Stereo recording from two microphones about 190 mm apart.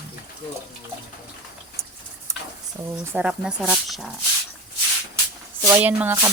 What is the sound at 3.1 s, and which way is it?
Speech, 5° right (ahead or behind).